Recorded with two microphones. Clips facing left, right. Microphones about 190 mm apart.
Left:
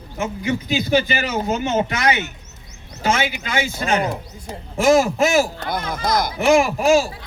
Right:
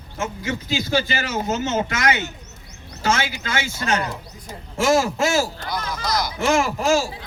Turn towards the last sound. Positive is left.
turn(degrees=15)  # may be behind; listen again after turning